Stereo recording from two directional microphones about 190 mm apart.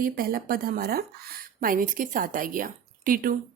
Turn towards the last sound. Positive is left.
turn(degrees=-45)  # may be behind; listen again after turning